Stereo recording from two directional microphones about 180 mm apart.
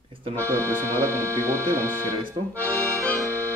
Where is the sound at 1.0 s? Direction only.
15° right (ahead or behind).